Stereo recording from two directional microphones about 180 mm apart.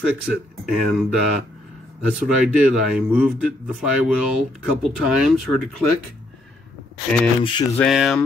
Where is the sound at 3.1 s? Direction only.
5° right (ahead or behind).